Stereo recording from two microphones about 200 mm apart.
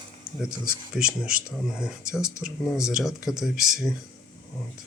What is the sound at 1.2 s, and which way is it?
Speech, 5° right (ahead or behind).